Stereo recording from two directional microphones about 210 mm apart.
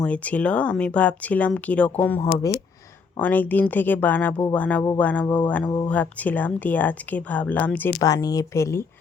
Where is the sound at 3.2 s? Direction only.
10° left (ahead or behind).